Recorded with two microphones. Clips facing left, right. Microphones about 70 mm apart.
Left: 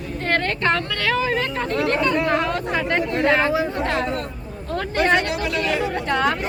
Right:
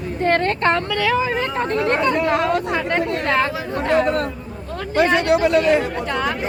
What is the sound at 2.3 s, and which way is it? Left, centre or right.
Speech, centre.